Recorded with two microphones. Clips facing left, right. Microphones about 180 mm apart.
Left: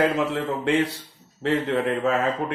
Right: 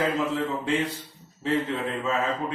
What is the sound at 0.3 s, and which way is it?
Speech, 70° left (ahead or behind).